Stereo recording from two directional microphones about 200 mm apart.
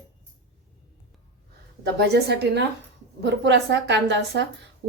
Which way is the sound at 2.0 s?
55° right (ahead or behind).